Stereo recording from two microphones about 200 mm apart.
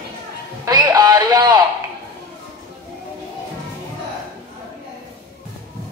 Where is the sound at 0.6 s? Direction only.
20° right (ahead or behind).